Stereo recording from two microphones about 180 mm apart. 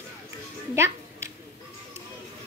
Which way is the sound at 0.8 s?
15° right (ahead or behind).